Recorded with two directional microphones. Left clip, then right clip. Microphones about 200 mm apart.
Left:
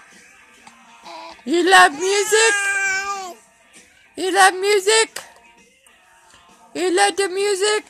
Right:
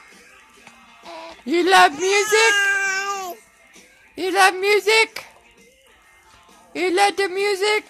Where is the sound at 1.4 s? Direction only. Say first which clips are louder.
Left 2 dB; 10° left (ahead or behind).